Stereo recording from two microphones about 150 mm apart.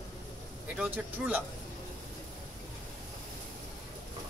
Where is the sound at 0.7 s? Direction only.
10° right (ahead or behind).